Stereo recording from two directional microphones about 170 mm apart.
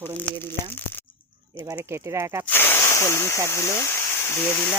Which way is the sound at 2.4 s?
10° left (ahead or behind).